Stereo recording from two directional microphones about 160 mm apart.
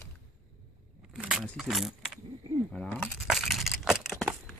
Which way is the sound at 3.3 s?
Centre (ahead or behind).